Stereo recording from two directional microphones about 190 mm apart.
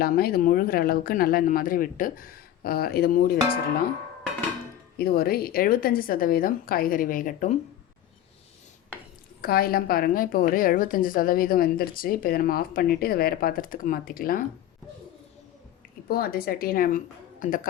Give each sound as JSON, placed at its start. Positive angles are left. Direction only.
{"t": 0.0, "sound": "a woman's voice", "side_deg": 55}
{"t": 4.9, "sound": "a woman's voice", "side_deg": 50}
{"t": 9.4, "sound": "a woman's voice", "side_deg": 50}
{"t": 16.0, "sound": "a woman's voice", "side_deg": 50}